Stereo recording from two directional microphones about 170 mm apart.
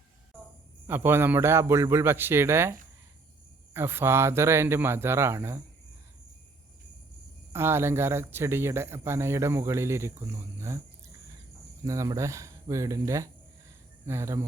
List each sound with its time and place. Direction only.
0.9 s speech: 15° right (ahead or behind)
3.8 s speech: 15° right (ahead or behind)
7.5 s speech: 15° right (ahead or behind)
11.8 s speech: 20° right (ahead or behind)